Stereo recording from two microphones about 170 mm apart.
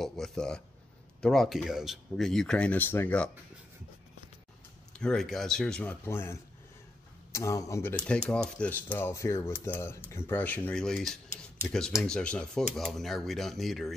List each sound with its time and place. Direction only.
0.0 s speech: centre (ahead or behind)
4.9 s speech: 5° left (ahead or behind)
7.9 s speech: 5° left (ahead or behind)